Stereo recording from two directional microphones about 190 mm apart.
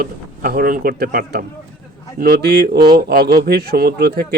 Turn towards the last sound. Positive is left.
turn(degrees=-55)  # may be behind; listen again after turning